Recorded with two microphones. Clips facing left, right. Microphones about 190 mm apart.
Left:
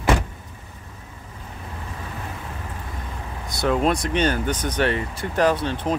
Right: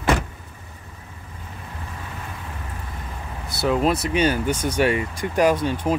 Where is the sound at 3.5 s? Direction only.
5° right (ahead or behind).